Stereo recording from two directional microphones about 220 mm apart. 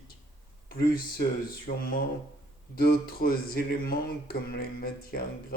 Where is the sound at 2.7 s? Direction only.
45° left (ahead or behind).